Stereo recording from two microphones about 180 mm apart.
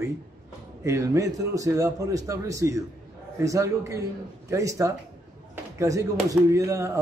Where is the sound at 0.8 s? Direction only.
15° right (ahead or behind).